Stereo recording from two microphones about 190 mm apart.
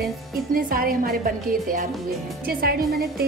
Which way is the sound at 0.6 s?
50° right (ahead or behind).